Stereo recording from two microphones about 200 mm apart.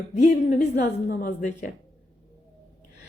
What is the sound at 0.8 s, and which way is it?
Speech, 45° left (ahead or behind).